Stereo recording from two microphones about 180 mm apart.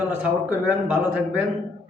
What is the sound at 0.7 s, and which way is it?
Speech, 10° right (ahead or behind).